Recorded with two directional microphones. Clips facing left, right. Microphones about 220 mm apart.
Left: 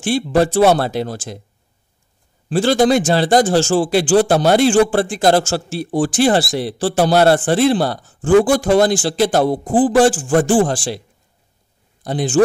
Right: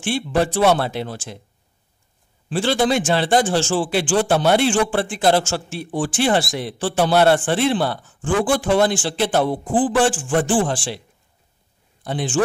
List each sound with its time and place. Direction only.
0.0 s speech: 40° left (ahead or behind)
2.5 s speech: 40° left (ahead or behind)
12.0 s speech: 40° left (ahead or behind)